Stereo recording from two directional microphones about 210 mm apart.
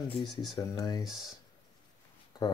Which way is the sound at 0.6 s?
15° left (ahead or behind).